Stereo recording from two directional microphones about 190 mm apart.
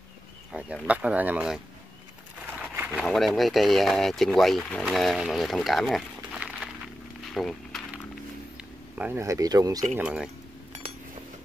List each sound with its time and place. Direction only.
0.5 s speech: 5° right (ahead or behind)
2.7 s a sound: 10° right (ahead or behind)
3.1 s speech: centre (ahead or behind)
7.3 s a sound: centre (ahead or behind)
8.9 s speech: 10° right (ahead or behind)
9.9 s speech: 5° right (ahead or behind)